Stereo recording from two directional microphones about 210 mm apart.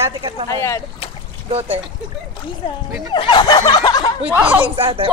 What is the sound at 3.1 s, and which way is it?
Speech, 20° left (ahead or behind).